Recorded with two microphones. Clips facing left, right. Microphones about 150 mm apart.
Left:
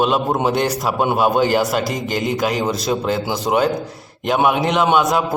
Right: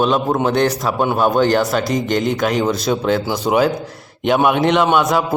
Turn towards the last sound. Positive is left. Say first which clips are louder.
# right 1 dB
turn(degrees=0)  # may be behind; listen again after turning